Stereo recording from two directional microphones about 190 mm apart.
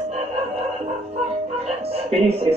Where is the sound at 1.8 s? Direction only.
30° right (ahead or behind).